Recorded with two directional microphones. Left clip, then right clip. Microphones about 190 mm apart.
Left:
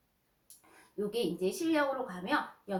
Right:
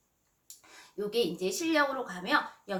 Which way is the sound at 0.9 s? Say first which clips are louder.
Right 3 dB; 20° right (ahead or behind).